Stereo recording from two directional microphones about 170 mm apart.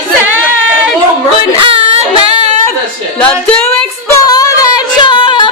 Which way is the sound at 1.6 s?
30° right (ahead or behind).